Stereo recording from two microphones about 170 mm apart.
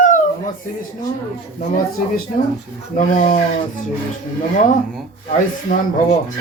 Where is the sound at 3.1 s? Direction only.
50° left (ahead or behind).